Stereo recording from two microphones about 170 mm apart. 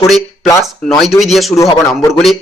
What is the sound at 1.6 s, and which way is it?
Speech, 20° left (ahead or behind).